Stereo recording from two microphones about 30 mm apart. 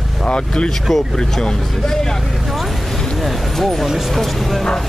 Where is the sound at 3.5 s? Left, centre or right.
Centre.